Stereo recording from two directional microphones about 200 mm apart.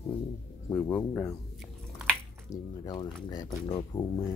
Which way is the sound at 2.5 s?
20° left (ahead or behind).